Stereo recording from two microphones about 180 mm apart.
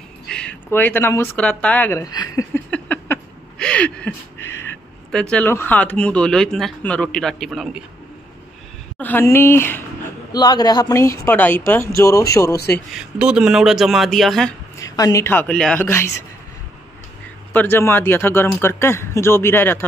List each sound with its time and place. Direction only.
0.3 s speech: 5° left (ahead or behind)
2.7 s a sound: 10° left (ahead or behind)
8.9 s a man's voice: 10° left (ahead or behind)
12.9 s speech: 5° right (ahead or behind)
14.8 s a man's voice: 20° left (ahead or behind)
17.5 s a man's voice: 10° left (ahead or behind)